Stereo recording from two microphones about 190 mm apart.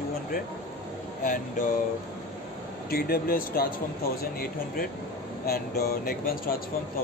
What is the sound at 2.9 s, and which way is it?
Speech, 55° left (ahead or behind).